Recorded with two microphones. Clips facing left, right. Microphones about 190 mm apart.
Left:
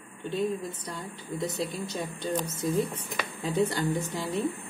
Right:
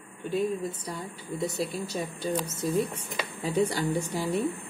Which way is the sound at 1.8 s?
10° right (ahead or behind).